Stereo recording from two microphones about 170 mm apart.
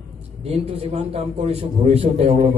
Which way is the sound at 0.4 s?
35° right (ahead or behind).